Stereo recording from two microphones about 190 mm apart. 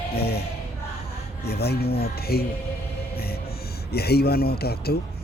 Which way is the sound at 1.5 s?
55° left (ahead or behind).